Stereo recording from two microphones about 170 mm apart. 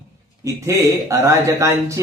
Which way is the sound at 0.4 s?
20° right (ahead or behind).